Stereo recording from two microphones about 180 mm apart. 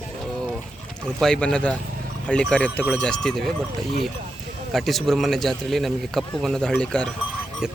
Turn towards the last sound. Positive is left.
turn(degrees=5)  # may be behind; listen again after turning